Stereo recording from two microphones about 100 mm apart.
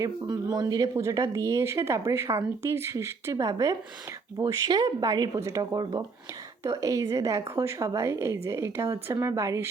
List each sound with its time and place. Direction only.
0.0 s a woman's voice: 40° right (ahead or behind)
5.3 s speech: 30° right (ahead or behind)
5.8 s a woman's voice: 40° right (ahead or behind)